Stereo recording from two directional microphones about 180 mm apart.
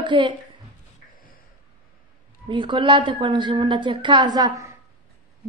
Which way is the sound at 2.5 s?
25° right (ahead or behind).